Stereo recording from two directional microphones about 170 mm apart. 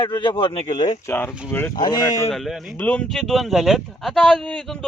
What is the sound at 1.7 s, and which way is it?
Speech, 25° left (ahead or behind).